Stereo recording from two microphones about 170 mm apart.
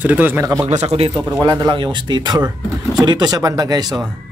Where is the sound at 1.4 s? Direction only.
25° right (ahead or behind).